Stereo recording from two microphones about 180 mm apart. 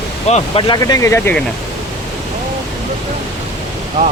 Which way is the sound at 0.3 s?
40° left (ahead or behind).